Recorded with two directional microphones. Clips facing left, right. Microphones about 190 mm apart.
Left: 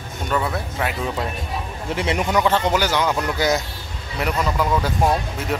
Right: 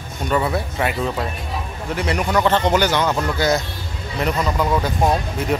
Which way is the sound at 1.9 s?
25° left (ahead or behind).